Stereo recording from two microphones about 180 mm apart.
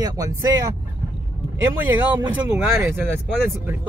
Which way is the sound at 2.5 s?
5° right (ahead or behind).